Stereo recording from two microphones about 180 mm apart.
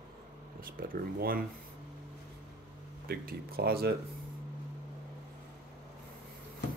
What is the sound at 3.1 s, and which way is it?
Speech, 55° right (ahead or behind).